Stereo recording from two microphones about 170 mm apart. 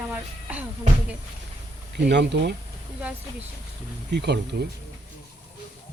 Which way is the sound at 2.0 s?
90° right.